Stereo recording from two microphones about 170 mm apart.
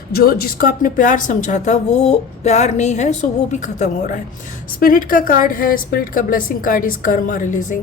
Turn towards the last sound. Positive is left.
turn(degrees=50)  # may be behind; listen again after turning